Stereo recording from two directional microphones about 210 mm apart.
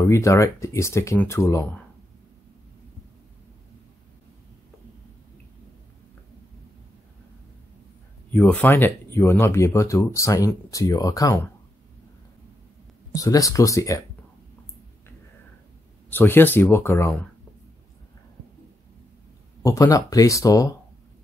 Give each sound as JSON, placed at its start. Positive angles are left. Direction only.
{"t": 0.0, "sound": "speech", "side_deg": 15}
{"t": 8.3, "sound": "speech", "side_deg": 10}
{"t": 13.1, "sound": "speech", "side_deg": 15}
{"t": 16.1, "sound": "speech", "side_deg": 10}
{"t": 19.6, "sound": "speech", "side_deg": 15}